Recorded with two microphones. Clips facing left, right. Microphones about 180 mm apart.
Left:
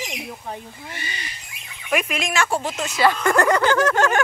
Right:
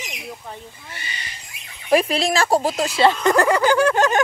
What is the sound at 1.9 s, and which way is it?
Speech, 35° right (ahead or behind).